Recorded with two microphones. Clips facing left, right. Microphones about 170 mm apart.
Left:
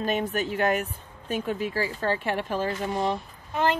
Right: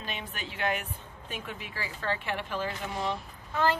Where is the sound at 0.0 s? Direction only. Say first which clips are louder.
Left 13 dB; 45° left (ahead or behind).